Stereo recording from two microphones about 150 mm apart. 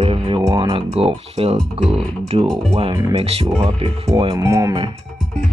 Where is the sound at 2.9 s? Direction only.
25° right (ahead or behind).